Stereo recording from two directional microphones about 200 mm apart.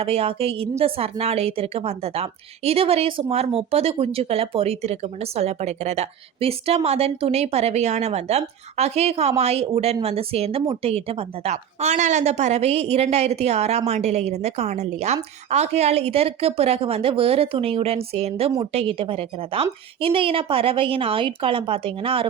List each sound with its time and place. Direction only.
0.0 s a woman's voice: 30° right (ahead or behind)